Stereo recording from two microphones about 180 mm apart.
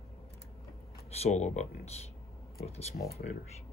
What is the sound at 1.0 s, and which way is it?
Speech, 35° left (ahead or behind).